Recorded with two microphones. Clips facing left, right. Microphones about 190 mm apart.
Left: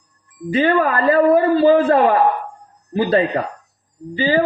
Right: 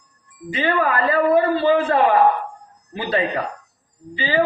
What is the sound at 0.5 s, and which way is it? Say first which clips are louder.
A man's voice: left 4 dB; 40° left (ahead or behind).